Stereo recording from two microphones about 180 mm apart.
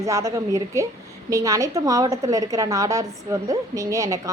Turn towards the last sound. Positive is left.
turn(degrees=-20)  # may be behind; listen again after turning